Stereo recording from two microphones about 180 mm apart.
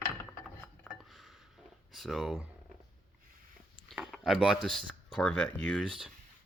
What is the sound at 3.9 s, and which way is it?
Speech, centre (ahead or behind).